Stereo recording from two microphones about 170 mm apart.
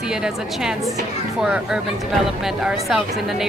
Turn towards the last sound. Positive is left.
turn(degrees=-5)  # may be behind; listen again after turning